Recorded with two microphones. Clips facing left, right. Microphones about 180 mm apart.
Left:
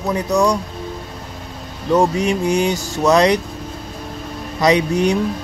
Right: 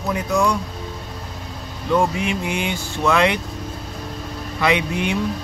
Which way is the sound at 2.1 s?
40° left (ahead or behind).